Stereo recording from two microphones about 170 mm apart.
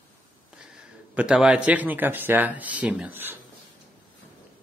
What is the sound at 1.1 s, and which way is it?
A man's voice, 5° right (ahead or behind).